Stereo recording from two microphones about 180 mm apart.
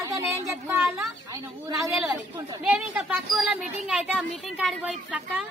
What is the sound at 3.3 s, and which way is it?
A woman's voice, centre (ahead or behind).